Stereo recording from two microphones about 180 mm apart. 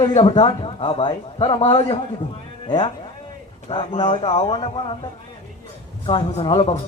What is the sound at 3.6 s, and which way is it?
A man's voice, 30° left (ahead or behind).